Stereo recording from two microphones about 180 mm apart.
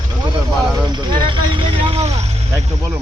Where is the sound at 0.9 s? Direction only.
25° right (ahead or behind).